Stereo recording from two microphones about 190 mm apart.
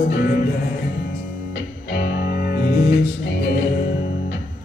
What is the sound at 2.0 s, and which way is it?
Music, 55° left (ahead or behind).